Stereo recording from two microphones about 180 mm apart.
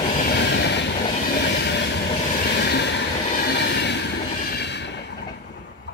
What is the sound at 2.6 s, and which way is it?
Train, 65° left (ahead or behind).